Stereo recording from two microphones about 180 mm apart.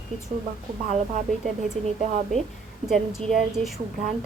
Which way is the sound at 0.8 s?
40° right (ahead or behind).